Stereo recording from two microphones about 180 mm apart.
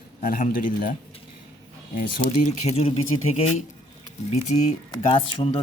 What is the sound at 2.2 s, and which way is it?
Speech, 40° left (ahead or behind).